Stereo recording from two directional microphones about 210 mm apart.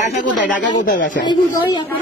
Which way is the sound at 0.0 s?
35° left (ahead or behind).